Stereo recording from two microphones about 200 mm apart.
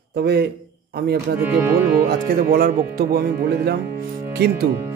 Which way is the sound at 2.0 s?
50° right (ahead or behind).